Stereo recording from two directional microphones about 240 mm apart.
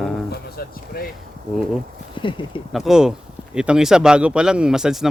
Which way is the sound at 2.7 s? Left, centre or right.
Centre.